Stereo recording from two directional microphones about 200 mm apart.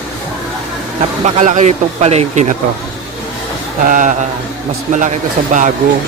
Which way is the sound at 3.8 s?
40° right (ahead or behind).